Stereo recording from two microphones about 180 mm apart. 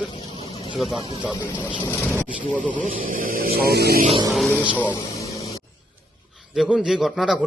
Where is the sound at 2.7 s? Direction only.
50° right (ahead or behind).